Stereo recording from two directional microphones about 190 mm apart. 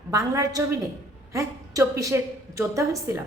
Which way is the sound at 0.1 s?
15° right (ahead or behind).